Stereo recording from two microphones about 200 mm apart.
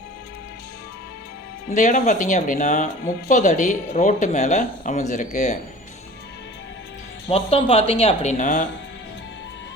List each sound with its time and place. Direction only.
1.7 s speech: 35° left (ahead or behind)
7.3 s speech: 30° left (ahead or behind)